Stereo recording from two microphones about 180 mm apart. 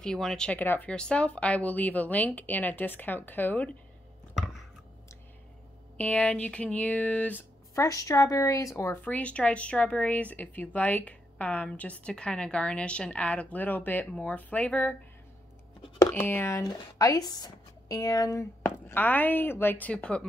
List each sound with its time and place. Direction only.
0.0 s speech: 5° left (ahead or behind)
5.9 s speech: 10° left (ahead or behind)
16.1 s speech: 10° left (ahead or behind)